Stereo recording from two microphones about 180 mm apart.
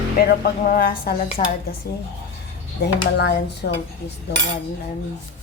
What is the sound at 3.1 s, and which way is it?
Speech, 65° left (ahead or behind).